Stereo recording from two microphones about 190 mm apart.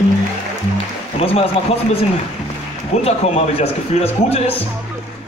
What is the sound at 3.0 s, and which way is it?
A man's voice, 35° left (ahead or behind).